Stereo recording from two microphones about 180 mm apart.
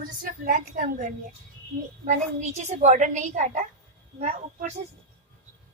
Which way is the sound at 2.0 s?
40° right (ahead or behind).